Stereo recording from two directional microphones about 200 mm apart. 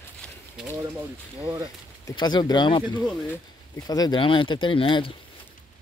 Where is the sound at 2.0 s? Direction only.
20° left (ahead or behind).